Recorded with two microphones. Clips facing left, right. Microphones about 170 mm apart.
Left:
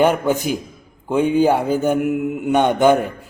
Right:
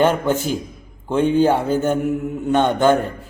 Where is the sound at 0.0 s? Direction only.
10° left (ahead or behind).